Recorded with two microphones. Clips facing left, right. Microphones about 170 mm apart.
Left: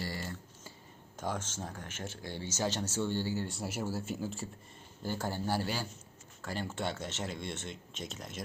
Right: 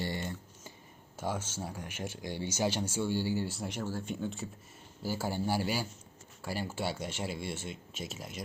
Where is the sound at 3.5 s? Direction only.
5° left (ahead or behind).